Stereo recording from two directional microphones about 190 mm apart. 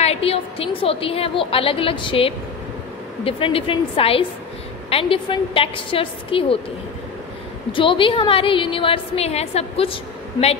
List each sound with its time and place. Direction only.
0.0 s a woman's voice: 30° left (ahead or behind)
7.7 s a woman's voice: 25° left (ahead or behind)